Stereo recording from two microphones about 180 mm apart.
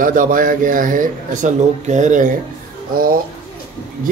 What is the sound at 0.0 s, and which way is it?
A man's voice, 50° right (ahead or behind).